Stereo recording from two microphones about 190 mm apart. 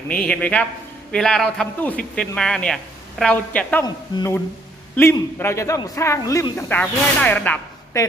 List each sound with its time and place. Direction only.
0.1 s a man's voice: 5° left (ahead or behind)
3.8 s a man's voice: 20° left (ahead or behind)